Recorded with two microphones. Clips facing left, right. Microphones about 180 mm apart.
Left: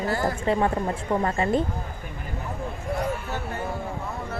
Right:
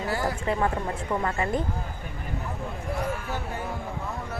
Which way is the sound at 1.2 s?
30° left (ahead or behind).